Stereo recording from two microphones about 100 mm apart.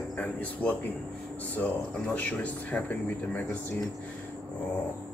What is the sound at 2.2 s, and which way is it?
Speech, 15° left (ahead or behind).